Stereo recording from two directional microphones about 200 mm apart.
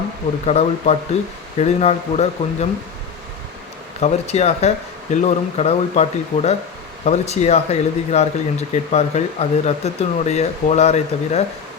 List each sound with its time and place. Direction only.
0.4 s speech: 30° left (ahead or behind)
4.0 s speech: 30° left (ahead or behind)